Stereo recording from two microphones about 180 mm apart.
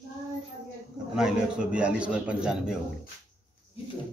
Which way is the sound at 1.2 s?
5° right (ahead or behind).